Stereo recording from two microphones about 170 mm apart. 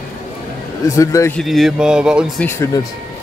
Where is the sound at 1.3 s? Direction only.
Centre (ahead or behind).